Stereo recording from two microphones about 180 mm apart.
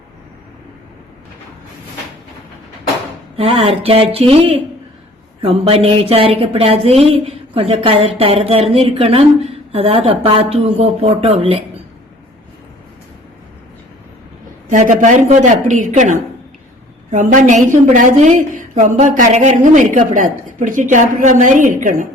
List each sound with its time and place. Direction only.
3.3 s speech: 30° right (ahead or behind)
14.7 s a woman's voice: 45° right (ahead or behind)